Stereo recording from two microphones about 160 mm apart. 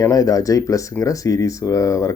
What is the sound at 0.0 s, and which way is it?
Speech, 20° left (ahead or behind).